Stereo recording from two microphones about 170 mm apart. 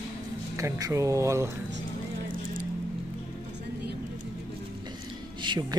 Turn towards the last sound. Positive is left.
turn(degrees=-25)  # may be behind; listen again after turning